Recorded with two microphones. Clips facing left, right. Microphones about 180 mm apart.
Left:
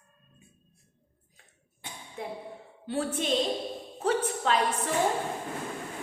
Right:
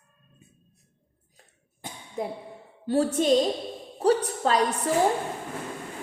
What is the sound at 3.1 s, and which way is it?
A woman's voice, 40° right (ahead or behind).